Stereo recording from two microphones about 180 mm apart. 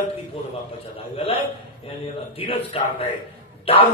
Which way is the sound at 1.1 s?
30° left (ahead or behind).